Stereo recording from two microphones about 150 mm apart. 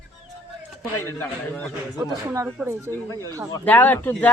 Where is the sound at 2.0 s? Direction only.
20° right (ahead or behind).